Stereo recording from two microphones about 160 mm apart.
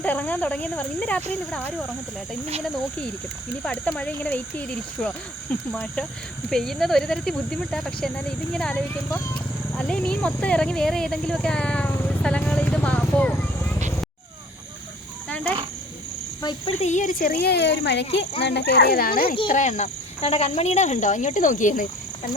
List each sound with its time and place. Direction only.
0.0 s speech: 10° left (ahead or behind)
3.6 s speech: 10° left (ahead or behind)
16.4 s speech: 25° left (ahead or behind)
16.8 s speech: 50° left (ahead or behind); by 19.4 s 70° left (ahead or behind)
19.5 s speech: 50° left (ahead or behind)